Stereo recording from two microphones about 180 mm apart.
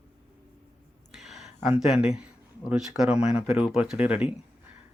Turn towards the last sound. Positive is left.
turn(degrees=-5)  # may be behind; listen again after turning